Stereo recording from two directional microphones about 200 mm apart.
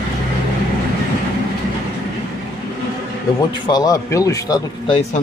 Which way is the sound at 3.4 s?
20° left (ahead or behind).